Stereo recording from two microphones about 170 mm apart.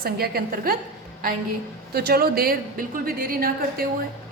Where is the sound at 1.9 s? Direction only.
65° right (ahead or behind).